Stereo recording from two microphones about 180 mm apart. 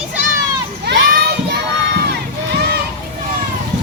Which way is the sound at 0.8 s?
65° right (ahead or behind).